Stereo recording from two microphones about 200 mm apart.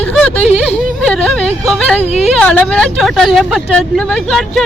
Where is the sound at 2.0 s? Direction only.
30° left (ahead or behind).